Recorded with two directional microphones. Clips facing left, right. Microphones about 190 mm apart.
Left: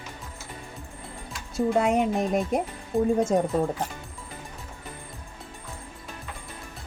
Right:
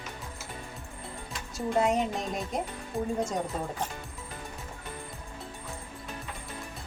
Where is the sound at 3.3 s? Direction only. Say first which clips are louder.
Left 9 dB; 55° left (ahead or behind).